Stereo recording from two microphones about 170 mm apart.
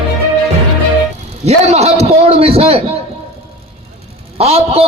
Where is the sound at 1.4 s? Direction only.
40° right (ahead or behind).